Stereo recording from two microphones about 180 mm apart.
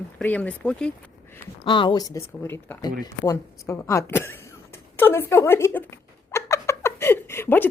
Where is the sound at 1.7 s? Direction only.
25° left (ahead or behind).